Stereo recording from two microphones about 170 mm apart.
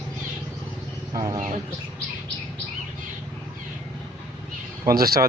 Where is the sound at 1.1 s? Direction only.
25° right (ahead or behind).